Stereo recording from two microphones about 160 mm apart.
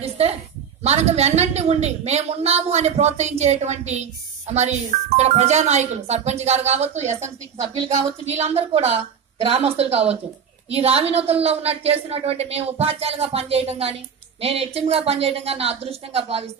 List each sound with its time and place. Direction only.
0.0 s a sound: 40° right (ahead or behind)
0.8 s a woman's voice: 40° right (ahead or behind)
8.3 s a woman's voice: 40° right (ahead or behind)